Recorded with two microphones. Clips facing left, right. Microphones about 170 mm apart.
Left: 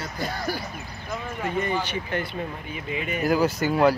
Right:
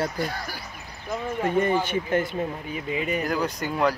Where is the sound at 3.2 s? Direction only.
5° left (ahead or behind).